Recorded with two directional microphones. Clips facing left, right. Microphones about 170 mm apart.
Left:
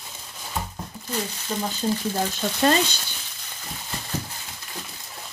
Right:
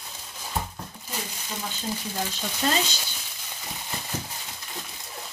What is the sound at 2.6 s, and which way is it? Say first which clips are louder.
Frying: left 6 dB; 65° left (ahead or behind).